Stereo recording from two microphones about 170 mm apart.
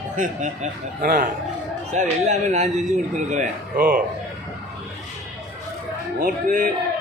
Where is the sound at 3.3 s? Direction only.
55° right (ahead or behind).